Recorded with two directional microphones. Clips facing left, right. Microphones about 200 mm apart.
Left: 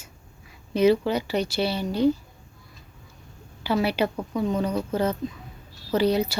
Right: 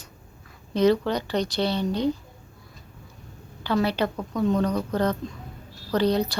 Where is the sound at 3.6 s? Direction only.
10° left (ahead or behind).